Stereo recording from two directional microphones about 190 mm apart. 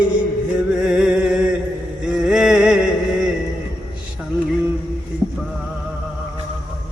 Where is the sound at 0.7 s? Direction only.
5° right (ahead or behind).